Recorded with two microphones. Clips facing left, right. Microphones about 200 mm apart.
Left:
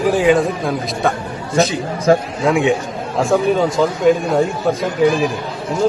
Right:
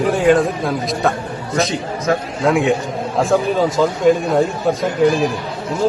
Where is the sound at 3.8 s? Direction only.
Centre (ahead or behind).